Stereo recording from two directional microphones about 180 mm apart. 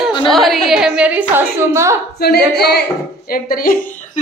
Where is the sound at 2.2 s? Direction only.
60° left (ahead or behind).